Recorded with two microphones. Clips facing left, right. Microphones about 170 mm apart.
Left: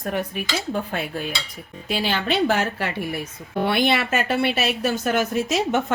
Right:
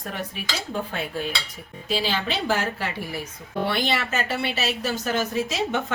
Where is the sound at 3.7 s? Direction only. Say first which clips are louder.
Left 6 dB; 60° left (ahead or behind).